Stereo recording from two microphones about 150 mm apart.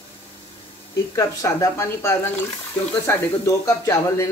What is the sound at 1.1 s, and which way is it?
Speech, 20° left (ahead or behind).